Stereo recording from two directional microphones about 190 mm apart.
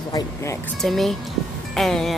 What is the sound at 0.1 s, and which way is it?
Speech, 15° left (ahead or behind).